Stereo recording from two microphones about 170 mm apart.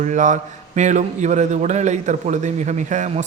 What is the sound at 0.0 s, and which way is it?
A man's voice, 45° right (ahead or behind).